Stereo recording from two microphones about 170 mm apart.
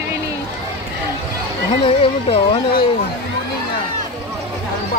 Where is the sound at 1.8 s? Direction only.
35° left (ahead or behind).